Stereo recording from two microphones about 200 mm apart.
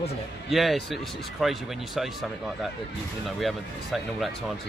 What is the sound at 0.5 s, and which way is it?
Speech, centre (ahead or behind).